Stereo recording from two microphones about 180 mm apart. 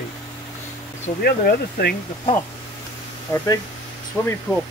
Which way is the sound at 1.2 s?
55° left (ahead or behind).